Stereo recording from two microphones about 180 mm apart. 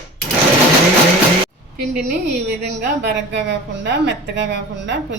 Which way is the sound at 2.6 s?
70° right (ahead or behind).